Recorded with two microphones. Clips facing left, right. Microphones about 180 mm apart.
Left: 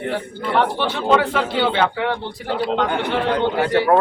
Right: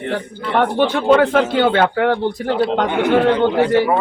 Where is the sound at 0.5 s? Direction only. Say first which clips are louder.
Right 4 dB; 50° right (ahead or behind).